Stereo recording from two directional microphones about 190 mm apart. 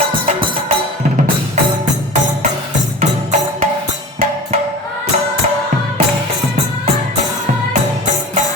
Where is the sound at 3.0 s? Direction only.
40° right (ahead or behind).